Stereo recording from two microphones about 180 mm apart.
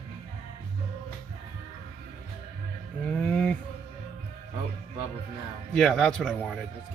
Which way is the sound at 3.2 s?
5° left (ahead or behind).